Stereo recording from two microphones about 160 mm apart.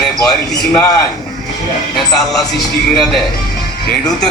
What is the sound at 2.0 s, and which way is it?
A man's voice, centre (ahead or behind).